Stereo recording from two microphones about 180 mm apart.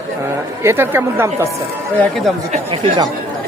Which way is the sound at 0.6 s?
15° right (ahead or behind).